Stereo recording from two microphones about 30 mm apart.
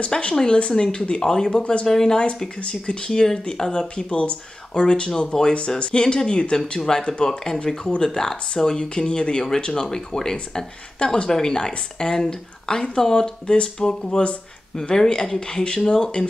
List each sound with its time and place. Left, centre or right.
0.1 s a woman's voice: left
1.2 s a woman's voice: centre
1.6 s speech: left
1.9 s speech: centre
2.7 s a woman's voice: left
6.8 s a woman's voice: left
8.0 s speech: centre
8.7 s a woman's voice: left
9.8 s a woman's voice: centre
15.6 s speech: left